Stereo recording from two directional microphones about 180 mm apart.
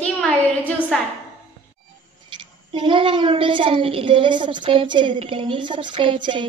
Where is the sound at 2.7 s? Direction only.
30° right (ahead or behind).